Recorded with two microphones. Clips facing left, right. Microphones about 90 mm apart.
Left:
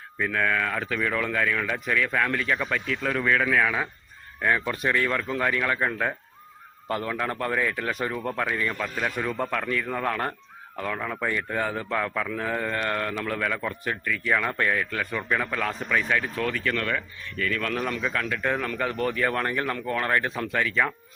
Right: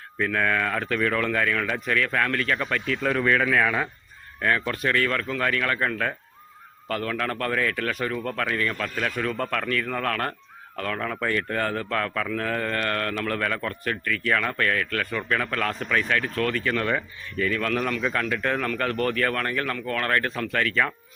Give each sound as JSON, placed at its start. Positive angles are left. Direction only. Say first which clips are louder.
{"t": 0.2, "sound": "speech", "louder": "right 1 dB", "side_deg": 5}
{"t": 16.6, "sound": "speech", "louder": "right 2 dB", "side_deg": -15}
{"t": 17.5, "sound": "speech", "louder": "right 2 dB", "side_deg": 0}
{"t": 19.3, "sound": "speech", "louder": "even", "side_deg": 20}